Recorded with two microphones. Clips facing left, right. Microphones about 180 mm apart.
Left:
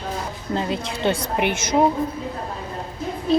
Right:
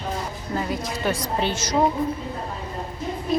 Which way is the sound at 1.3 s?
15° left (ahead or behind).